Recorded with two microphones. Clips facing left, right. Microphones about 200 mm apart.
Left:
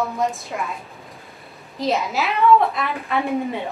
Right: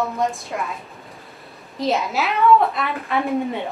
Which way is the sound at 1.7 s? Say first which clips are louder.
Even; centre (ahead or behind).